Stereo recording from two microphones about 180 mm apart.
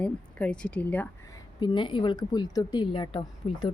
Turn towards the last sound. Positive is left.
turn(degrees=30)  # may be behind; listen again after turning